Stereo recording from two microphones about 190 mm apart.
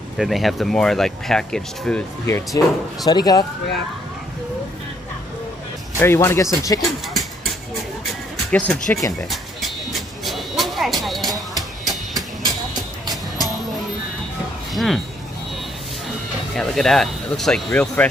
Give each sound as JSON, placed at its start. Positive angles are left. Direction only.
{"t": 0.2, "sound": "speech", "side_deg": 0}
{"t": 5.9, "sound": "speech", "side_deg": 15}
{"t": 8.5, "sound": "speech", "side_deg": 5}
{"t": 9.3, "sound": "music", "side_deg": 0}
{"t": 11.8, "sound": "train", "side_deg": 0}
{"t": 13.0, "sound": "music", "side_deg": 0}
{"t": 14.7, "sound": "speech", "side_deg": 0}
{"t": 16.5, "sound": "speech", "side_deg": 0}